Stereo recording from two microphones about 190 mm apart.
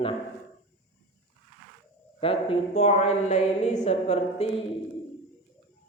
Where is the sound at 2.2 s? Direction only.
30° left (ahead or behind).